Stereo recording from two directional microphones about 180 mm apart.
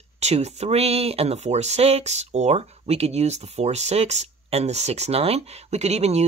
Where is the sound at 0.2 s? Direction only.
40° right (ahead or behind).